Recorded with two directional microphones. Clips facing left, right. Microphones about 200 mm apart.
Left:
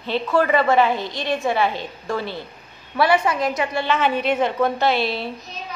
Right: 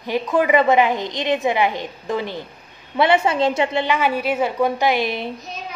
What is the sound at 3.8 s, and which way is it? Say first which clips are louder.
A woman's voice: even; 10° right (ahead or behind).